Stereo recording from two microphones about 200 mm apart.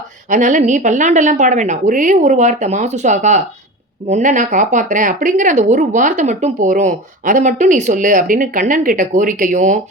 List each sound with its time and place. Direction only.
0.3 s speech: 40° right (ahead or behind)